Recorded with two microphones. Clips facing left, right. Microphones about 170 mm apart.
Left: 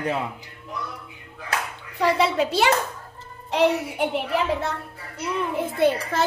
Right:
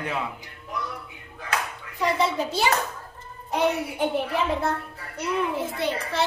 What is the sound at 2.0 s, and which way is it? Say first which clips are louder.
Speech: left 3 dB; 70° left (ahead or behind).